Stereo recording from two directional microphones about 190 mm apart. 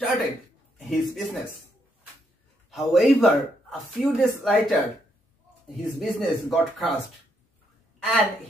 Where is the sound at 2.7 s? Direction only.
Centre (ahead or behind).